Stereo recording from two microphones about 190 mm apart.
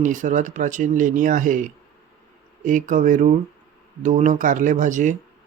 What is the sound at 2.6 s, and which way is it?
Speech, 45° right (ahead or behind).